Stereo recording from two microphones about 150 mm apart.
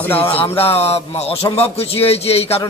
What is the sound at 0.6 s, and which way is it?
A man's voice, 40° left (ahead or behind).